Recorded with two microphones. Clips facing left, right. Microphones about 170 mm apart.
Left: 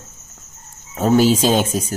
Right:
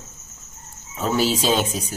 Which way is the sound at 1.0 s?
45° left (ahead or behind).